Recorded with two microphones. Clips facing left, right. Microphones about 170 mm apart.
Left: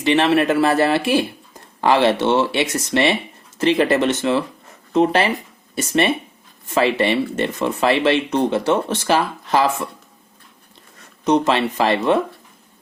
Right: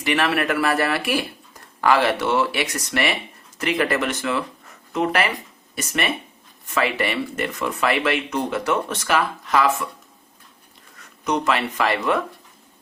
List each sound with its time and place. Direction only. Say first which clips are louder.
0.0 s speech: left 6 dB; 25° left (ahead or behind)
11.3 s speech: left 5 dB; 25° left (ahead or behind)